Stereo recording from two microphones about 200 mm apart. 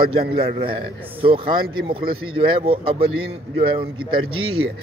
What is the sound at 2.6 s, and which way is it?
Speech, 30° right (ahead or behind).